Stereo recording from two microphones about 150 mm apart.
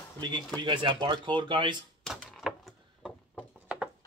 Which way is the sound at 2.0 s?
Centre (ahead or behind).